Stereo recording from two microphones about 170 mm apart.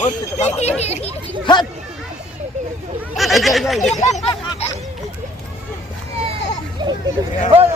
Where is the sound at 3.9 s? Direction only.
45° left (ahead or behind).